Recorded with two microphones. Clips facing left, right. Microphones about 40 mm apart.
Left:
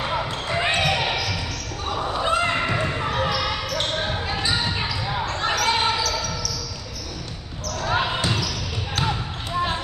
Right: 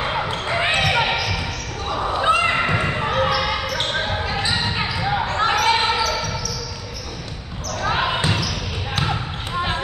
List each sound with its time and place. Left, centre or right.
0.1 s basketball bounce: right
7.9 s basketball bounce: right